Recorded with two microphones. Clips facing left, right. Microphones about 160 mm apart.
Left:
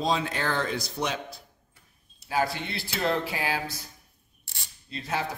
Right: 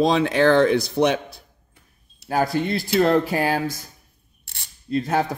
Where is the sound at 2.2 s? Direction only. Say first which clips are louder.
Right 7 dB; 45° right (ahead or behind).